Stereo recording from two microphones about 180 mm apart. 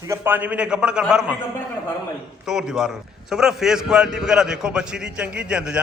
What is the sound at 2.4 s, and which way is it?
A man's voice, centre (ahead or behind).